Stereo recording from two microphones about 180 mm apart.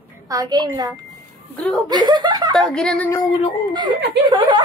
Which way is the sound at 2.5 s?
5° left (ahead or behind).